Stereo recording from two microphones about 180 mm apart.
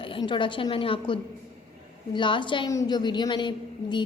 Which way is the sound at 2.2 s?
25° left (ahead or behind).